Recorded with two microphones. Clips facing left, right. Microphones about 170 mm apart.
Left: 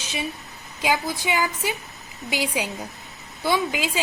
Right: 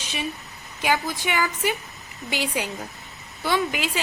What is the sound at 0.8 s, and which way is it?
A woman's voice, 15° left (ahead or behind).